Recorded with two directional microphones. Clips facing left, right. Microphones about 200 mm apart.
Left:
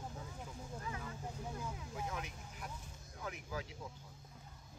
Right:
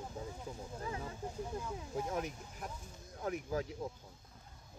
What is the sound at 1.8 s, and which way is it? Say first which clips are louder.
Speech: right 6 dB; 40° right (ahead or behind).